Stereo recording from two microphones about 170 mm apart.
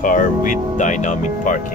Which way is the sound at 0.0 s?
50° left (ahead or behind).